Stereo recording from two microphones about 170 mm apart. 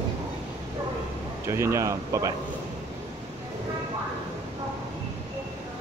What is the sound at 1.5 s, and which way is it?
Speech, 15° right (ahead or behind).